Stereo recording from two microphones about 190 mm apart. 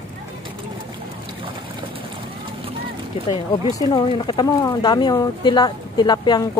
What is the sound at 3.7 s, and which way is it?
Speech, 25° left (ahead or behind).